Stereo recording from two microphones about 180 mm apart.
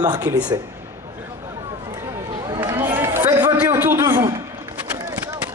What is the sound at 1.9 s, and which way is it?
Run, 20° right (ahead or behind).